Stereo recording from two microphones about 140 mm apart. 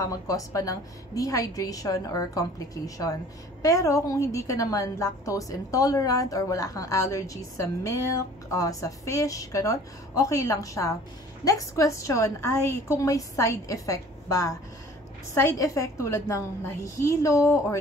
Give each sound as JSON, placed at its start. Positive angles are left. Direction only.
{"t": 0.0, "sound": "a woman's voice", "side_deg": 25}